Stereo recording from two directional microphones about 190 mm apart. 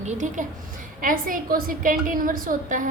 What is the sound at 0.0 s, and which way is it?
A woman's voice, 40° right (ahead or behind).